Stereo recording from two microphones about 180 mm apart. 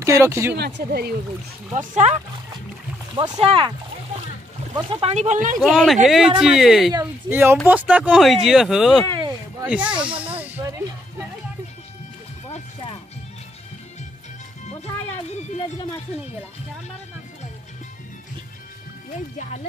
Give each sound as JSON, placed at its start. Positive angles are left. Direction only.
{"t": 0.0, "sound": "speech", "side_deg": -15}
{"t": 0.6, "sound": "speech", "side_deg": -70}
{"t": 1.7, "sound": "speech", "side_deg": -40}
{"t": 3.2, "sound": "speech", "side_deg": -30}
{"t": 4.7, "sound": "speech", "side_deg": -35}
{"t": 5.6, "sound": "speech", "side_deg": 0}
{"t": 9.0, "sound": "a sound", "side_deg": -25}
{"t": 9.7, "sound": "speech", "side_deg": -5}
{"t": 10.4, "sound": "a sound", "side_deg": -10}